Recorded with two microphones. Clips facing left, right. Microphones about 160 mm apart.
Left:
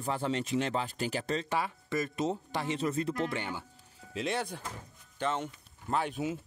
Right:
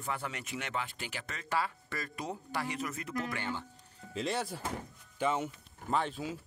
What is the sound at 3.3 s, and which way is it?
Speech, 15° left (ahead or behind).